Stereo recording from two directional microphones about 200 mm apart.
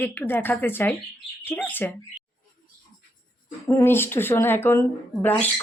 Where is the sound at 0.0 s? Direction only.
10° left (ahead or behind).